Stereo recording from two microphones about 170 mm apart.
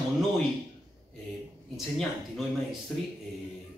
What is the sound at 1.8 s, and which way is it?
Speech, centre (ahead or behind).